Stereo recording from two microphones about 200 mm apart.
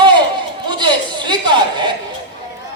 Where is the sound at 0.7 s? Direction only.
20° right (ahead or behind).